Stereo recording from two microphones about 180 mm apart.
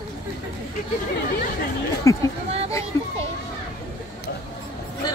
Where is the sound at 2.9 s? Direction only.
15° left (ahead or behind).